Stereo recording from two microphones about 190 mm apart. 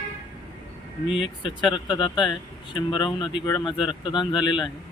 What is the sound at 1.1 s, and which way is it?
Speech, 25° left (ahead or behind).